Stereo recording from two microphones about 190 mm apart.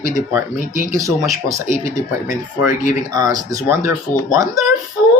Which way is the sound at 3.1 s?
20° right (ahead or behind).